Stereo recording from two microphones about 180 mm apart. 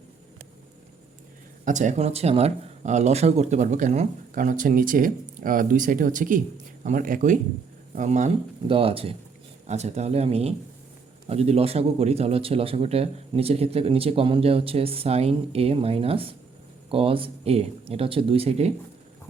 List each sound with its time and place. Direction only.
1.6 s a man's voice: 45° right (ahead or behind)
8.7 s a man's voice: 30° right (ahead or behind)